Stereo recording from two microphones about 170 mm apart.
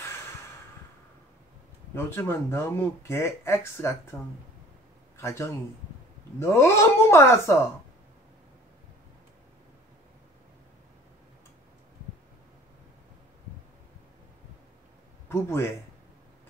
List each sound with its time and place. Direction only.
2.0 s speech: 15° left (ahead or behind)
15.2 s speech: 15° left (ahead or behind)